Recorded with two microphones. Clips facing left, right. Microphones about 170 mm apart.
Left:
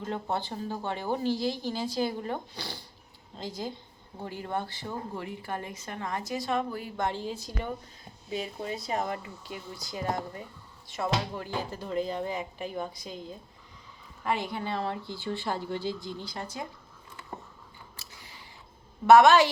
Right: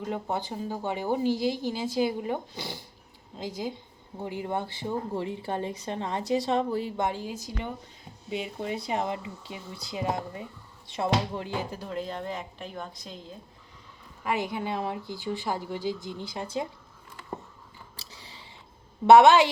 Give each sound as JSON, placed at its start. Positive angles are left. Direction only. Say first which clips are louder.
{"t": 0.0, "sound": "speech", "louder": "right 1 dB", "side_deg": -10}
{"t": 6.9, "sound": "speech", "louder": "right 1 dB", "side_deg": -10}
{"t": 8.6, "sound": "speech", "louder": "right 3 dB", "side_deg": -20}
{"t": 11.8, "sound": "speech", "louder": "left 3 dB", "side_deg": 0}
{"t": 14.3, "sound": "speech", "louder": "right 1 dB", "side_deg": -15}
{"t": 19.0, "sound": "speech", "louder": "right 2 dB", "side_deg": -25}